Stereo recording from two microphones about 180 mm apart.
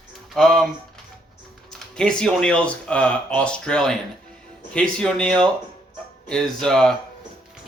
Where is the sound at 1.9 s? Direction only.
5° left (ahead or behind).